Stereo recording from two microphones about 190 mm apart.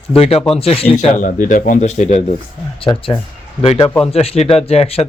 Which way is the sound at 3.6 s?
30° left (ahead or behind).